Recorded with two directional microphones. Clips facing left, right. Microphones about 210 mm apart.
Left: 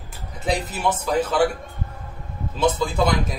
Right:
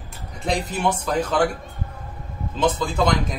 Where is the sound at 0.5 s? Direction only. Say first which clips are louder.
Even; 5° left (ahead or behind).